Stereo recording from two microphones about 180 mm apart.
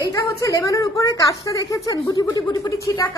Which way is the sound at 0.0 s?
20° left (ahead or behind).